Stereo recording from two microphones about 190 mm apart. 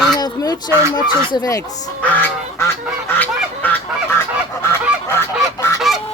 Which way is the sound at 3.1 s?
10° left (ahead or behind).